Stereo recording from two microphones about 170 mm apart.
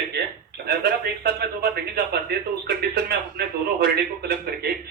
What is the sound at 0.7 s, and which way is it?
A man's voice, 65° right (ahead or behind).